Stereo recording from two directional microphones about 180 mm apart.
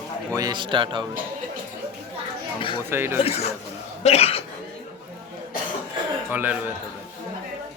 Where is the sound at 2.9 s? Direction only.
10° right (ahead or behind).